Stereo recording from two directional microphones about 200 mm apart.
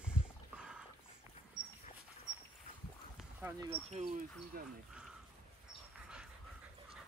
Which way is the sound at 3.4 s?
15° right (ahead or behind).